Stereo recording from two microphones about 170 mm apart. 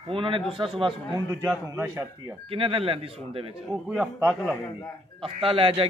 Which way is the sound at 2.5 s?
35° right (ahead or behind).